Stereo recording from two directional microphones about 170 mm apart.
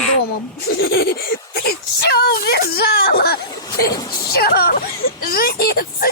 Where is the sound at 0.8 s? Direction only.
70° left (ahead or behind).